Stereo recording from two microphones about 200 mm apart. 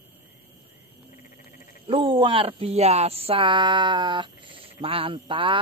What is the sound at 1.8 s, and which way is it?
Speech, 25° right (ahead or behind).